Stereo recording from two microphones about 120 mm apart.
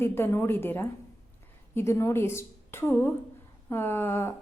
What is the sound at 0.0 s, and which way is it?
A woman's voice, 20° left (ahead or behind).